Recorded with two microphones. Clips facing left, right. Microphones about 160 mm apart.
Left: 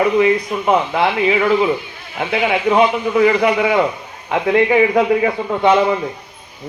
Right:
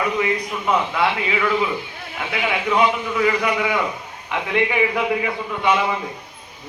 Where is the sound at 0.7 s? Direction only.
25° left (ahead or behind).